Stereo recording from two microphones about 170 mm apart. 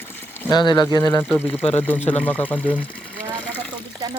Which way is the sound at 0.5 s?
25° left (ahead or behind).